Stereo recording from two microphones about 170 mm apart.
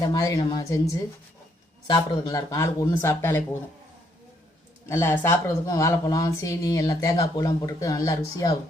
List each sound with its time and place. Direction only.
0.0 s speech: 20° left (ahead or behind)
0.3 s speech: 30° left (ahead or behind)
1.9 s speech: 25° left (ahead or behind)
4.9 s speech: 15° left (ahead or behind)